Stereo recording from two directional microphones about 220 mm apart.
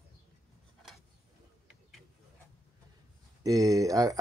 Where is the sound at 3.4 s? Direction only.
15° right (ahead or behind).